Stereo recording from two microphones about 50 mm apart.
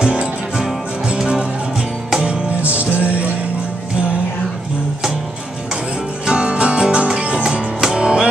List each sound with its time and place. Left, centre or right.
0.0 s music: right
2.2 s music: right
6.2 s music: right